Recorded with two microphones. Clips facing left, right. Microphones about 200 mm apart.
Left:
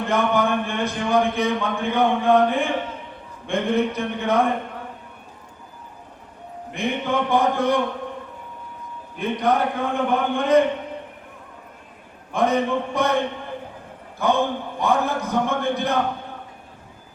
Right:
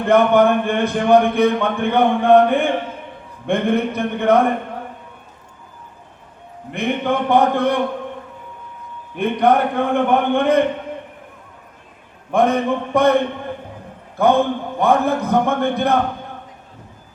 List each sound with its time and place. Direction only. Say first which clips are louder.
0.1 s speech: right 8 dB; 60° right (ahead or behind)
6.7 s speech: right 4 dB; 60° right (ahead or behind)
9.1 s speech: right 5 dB; 60° right (ahead or behind)
12.3 s speech: right 4 dB; 60° right (ahead or behind)
14.2 s speech: right 6 dB; 60° right (ahead or behind)